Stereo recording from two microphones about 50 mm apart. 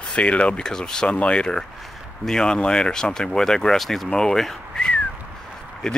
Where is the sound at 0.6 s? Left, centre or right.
Centre.